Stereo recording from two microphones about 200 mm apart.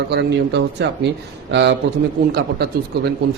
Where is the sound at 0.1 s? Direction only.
60° right (ahead or behind).